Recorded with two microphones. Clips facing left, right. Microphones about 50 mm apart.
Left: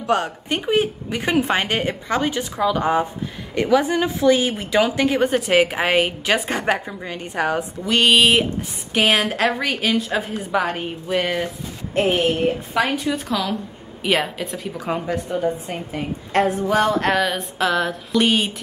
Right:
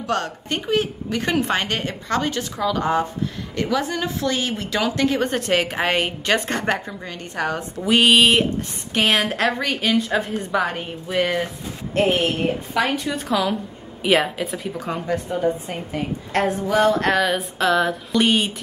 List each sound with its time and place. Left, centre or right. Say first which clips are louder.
0.0 s a woman's voice: left 3 dB; centre
7.8 s a woman's voice: right 1 dB; centre
14.9 s a woman's voice: left 2 dB; centre